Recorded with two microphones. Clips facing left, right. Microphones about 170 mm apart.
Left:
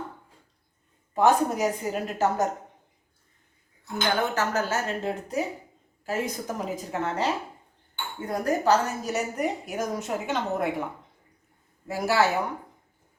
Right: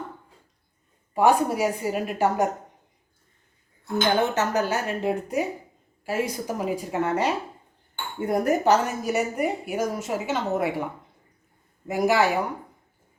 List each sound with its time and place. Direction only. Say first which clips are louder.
1.1 s a woman's voice: right 1 dB; 10° right (ahead or behind)
4.0 s a woman's voice: right 3 dB; 25° right (ahead or behind)
8.2 s a woman's voice: right 4 dB; 20° right (ahead or behind); by 10.8 s 5° right (ahead or behind)
11.9 s a woman's voice: right 3 dB; 15° right (ahead or behind)